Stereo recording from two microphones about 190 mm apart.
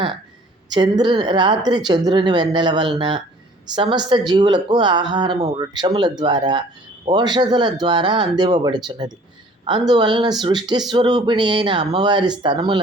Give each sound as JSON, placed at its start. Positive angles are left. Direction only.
{"t": 0.7, "sound": "a woman's voice", "side_deg": -25}